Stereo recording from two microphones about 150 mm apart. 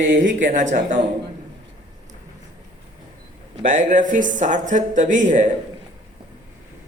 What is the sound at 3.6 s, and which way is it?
Speech, 60° right (ahead or behind).